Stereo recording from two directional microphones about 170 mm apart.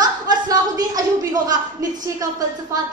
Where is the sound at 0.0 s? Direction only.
20° right (ahead or behind).